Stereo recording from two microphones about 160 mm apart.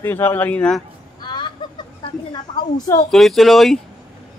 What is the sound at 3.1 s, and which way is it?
Speech, centre (ahead or behind).